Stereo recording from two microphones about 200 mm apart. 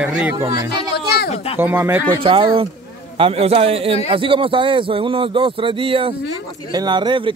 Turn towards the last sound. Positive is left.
turn(degrees=-25)  # may be behind; listen again after turning